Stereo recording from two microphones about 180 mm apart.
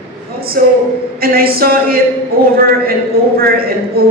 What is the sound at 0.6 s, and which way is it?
A man's voice, 55° right (ahead or behind).